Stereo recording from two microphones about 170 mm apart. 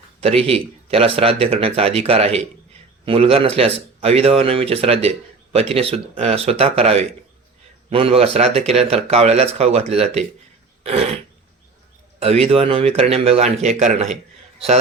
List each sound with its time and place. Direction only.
0.2 s speech: 35° right (ahead or behind)
12.2 s speech: 35° right (ahead or behind)